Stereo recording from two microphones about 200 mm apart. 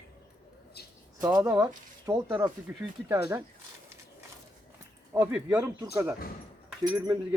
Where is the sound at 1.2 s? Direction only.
20° right (ahead or behind).